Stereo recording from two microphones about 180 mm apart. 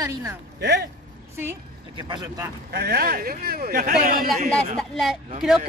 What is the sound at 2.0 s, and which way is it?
Speech, 25° right (ahead or behind).